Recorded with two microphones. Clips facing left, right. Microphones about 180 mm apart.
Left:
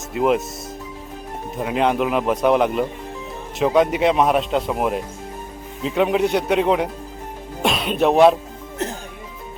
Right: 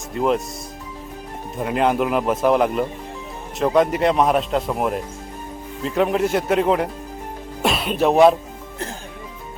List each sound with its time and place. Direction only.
0.1 s speech: 5° left (ahead or behind)
1.5 s speech: centre (ahead or behind)
8.8 s music: 20° left (ahead or behind)